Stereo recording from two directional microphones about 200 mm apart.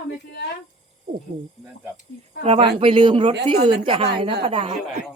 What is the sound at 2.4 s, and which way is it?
Speech, 30° right (ahead or behind).